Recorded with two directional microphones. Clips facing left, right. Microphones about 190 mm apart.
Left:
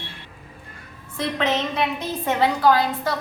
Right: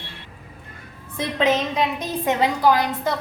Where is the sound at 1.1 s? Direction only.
15° right (ahead or behind).